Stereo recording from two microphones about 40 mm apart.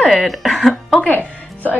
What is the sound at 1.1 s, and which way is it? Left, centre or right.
Music, left.